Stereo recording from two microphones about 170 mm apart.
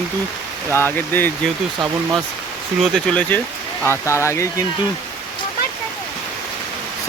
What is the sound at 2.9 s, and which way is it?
Speech, 5° left (ahead or behind).